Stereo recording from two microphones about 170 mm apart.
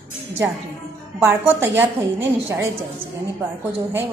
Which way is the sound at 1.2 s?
10° right (ahead or behind).